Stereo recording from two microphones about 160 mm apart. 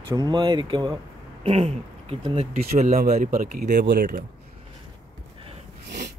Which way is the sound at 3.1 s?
55° right (ahead or behind).